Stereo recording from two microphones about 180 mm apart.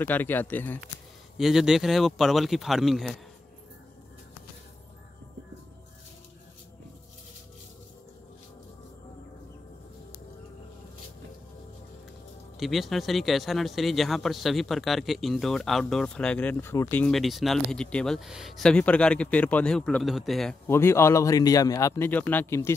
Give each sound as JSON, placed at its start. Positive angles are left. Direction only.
{"t": 0.0, "sound": "a man's voice", "side_deg": 10}
{"t": 1.4, "sound": "speech", "side_deg": -5}
{"t": 12.5, "sound": "speech", "side_deg": 0}
{"t": 20.6, "sound": "a man's voice", "side_deg": 15}